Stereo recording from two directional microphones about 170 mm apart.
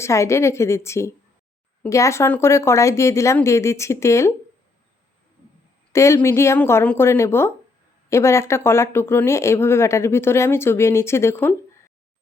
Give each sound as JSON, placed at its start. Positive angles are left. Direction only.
{"t": 0.0, "sound": "speech", "side_deg": 15}
{"t": 5.9, "sound": "a woman's voice", "side_deg": 15}